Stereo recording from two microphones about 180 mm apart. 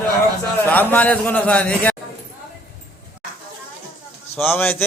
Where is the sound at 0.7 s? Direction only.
10° left (ahead or behind).